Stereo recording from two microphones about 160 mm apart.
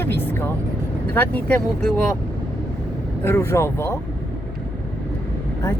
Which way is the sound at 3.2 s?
15° left (ahead or behind).